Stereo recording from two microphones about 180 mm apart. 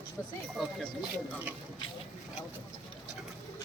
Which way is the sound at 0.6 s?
Centre (ahead or behind).